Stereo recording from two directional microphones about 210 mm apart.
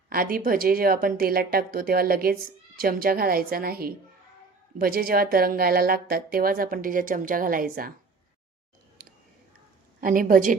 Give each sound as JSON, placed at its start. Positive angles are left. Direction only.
{"t": 0.1, "sound": "speech", "side_deg": -45}
{"t": 10.0, "sound": "speech", "side_deg": -40}